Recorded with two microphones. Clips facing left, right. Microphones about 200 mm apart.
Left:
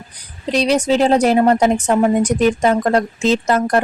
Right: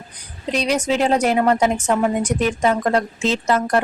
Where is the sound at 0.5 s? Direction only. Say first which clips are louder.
Left 5 dB; 35° left (ahead or behind).